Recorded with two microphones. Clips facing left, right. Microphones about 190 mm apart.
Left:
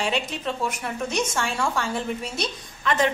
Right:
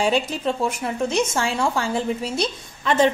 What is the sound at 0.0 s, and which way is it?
A woman's voice, 35° right (ahead or behind).